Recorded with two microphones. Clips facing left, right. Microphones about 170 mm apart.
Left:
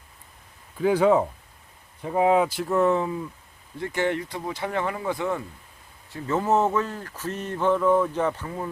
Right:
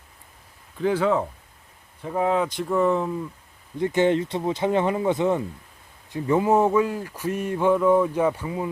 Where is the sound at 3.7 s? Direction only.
20° right (ahead or behind).